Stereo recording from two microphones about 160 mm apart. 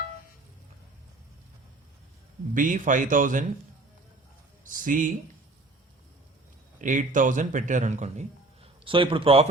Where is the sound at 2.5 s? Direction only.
55° right (ahead or behind).